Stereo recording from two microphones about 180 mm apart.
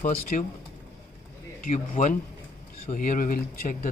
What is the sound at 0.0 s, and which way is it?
Speech, 45° left (ahead or behind).